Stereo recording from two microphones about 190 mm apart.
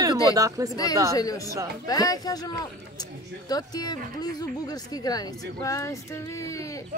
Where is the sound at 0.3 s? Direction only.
15° right (ahead or behind).